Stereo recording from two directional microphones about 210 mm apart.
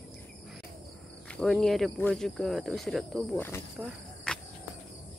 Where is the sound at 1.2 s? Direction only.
5° left (ahead or behind).